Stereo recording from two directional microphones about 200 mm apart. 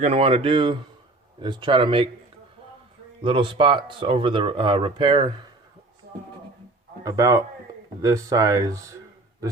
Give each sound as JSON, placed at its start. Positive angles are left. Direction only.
{"t": 0.0, "sound": "speech", "side_deg": -30}
{"t": 3.2, "sound": "speech", "side_deg": -25}
{"t": 7.0, "sound": "speech", "side_deg": -15}